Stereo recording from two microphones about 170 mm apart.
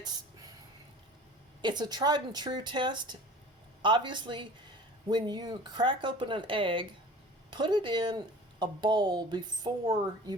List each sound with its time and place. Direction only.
1.6 s speech: 25° right (ahead or behind)